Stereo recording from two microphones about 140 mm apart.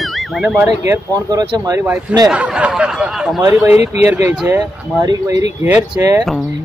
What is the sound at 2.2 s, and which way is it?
Speech, 5° right (ahead or behind).